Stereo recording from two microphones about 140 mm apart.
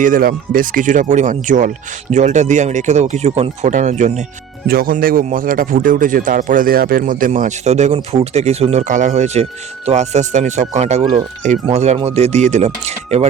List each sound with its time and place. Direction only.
0.0 s speech: 80° right; by 4.3 s 55° right (ahead or behind)
4.7 s speech: 90° right; by 11.0 s 50° right (ahead or behind)
11.0 s speech: 30° right (ahead or behind)
11.6 s speech: 50° right (ahead or behind)